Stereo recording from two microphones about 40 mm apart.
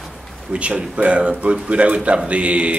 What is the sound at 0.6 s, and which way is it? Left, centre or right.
Speech, right.